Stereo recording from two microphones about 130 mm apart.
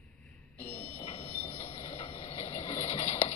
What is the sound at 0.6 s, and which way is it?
Fire alarm, 15° left (ahead or behind).